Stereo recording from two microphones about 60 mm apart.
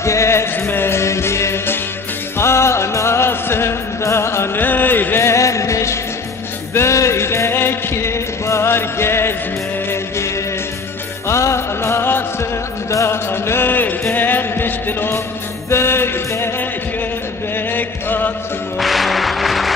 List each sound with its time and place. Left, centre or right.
0.0 s music: left
4.6 s a sound: left
5.2 s music: left
12.9 s music: left
15.7 s chant: left
17.6 s chant: left
18.8 s music: centre